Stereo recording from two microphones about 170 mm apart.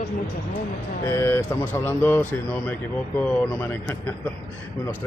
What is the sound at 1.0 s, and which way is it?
A man's voice, 15° left (ahead or behind).